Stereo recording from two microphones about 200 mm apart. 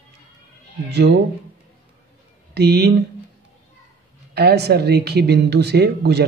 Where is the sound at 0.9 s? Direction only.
55° right (ahead or behind).